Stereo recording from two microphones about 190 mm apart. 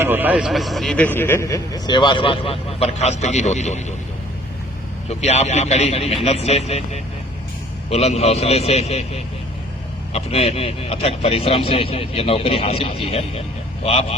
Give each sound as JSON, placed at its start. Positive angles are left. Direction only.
{"t": 0.0, "sound": "a man's voice", "side_deg": -10}
{"t": 5.0, "sound": "speech", "side_deg": 35}